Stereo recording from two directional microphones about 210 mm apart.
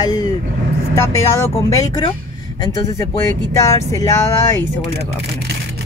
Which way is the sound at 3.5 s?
15° left (ahead or behind).